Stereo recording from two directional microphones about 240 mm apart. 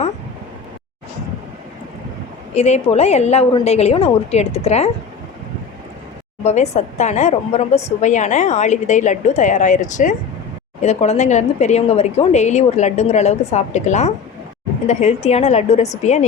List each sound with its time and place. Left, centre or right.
2.6 s a woman's voice: left
6.4 s a woman's voice: left